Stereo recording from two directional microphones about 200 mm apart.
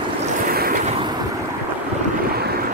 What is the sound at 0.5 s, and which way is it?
Vehicle, 45° right (ahead or behind).